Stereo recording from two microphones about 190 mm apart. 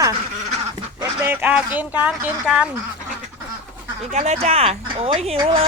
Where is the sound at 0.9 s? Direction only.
10° right (ahead or behind).